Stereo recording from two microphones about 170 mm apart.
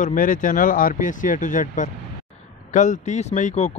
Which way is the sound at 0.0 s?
50° left (ahead or behind).